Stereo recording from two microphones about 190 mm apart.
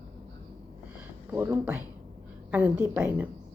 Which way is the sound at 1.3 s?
15° right (ahead or behind).